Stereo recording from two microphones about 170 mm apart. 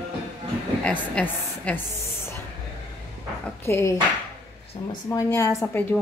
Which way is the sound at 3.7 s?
15° left (ahead or behind).